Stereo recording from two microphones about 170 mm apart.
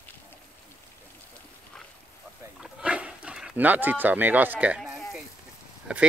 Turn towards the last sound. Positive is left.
turn(degrees=-5)  # may be behind; listen again after turning